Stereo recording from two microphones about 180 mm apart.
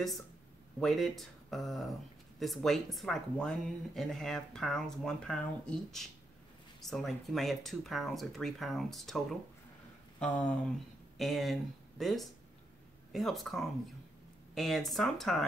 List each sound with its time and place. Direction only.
0.7 s speech: centre (ahead or behind)